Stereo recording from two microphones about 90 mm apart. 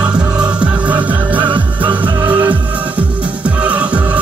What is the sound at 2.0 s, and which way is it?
Music, 65° right (ahead or behind).